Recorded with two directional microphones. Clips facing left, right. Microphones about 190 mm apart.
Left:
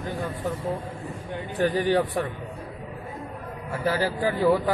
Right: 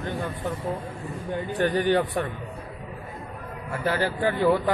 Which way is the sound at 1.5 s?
Centre (ahead or behind).